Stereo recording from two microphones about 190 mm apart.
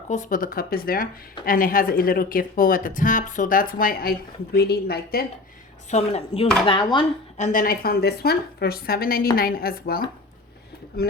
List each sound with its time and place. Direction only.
0.1 s a woman's voice: 45° left (ahead or behind)
5.9 s speech: 35° left (ahead or behind)
7.3 s a woman's voice: 40° left (ahead or behind)